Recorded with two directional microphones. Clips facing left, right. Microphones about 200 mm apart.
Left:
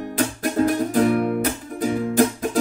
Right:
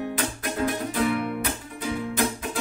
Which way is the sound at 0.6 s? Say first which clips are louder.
Left 7 dB; 45° left (ahead or behind).